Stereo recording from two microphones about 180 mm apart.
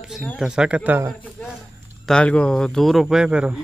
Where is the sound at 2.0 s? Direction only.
5° left (ahead or behind).